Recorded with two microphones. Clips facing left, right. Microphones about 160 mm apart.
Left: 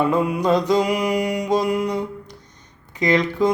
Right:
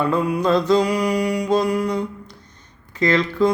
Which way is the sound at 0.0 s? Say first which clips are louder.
Even; 20° left (ahead or behind).